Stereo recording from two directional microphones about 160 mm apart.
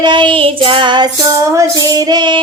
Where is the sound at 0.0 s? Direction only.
30° right (ahead or behind).